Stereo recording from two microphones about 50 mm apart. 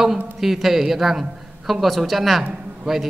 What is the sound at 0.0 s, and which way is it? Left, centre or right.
A man's voice, centre.